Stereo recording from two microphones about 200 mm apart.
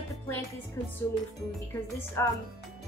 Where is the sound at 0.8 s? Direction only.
15° left (ahead or behind).